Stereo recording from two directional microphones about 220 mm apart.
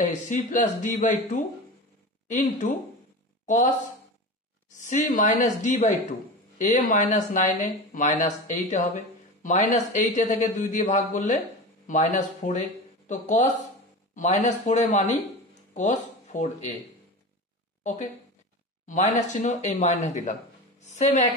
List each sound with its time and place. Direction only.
0.0 s speech: 35° left (ahead or behind)
4.7 s speech: 35° left (ahead or behind)
18.9 s a woman's voice: 35° left (ahead or behind)